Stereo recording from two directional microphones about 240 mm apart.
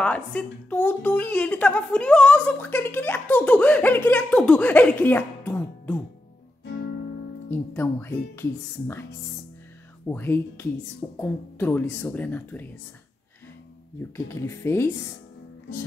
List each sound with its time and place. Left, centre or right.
0.0 s a woman's voice: centre
6.6 s guitar: left
7.5 s a woman's voice: centre
10.0 s a woman's voice: centre
14.1 s a woman's voice: centre